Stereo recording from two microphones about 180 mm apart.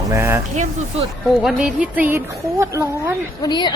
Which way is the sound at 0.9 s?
35° right (ahead or behind).